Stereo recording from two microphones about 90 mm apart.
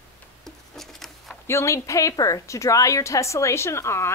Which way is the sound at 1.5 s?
35° left (ahead or behind).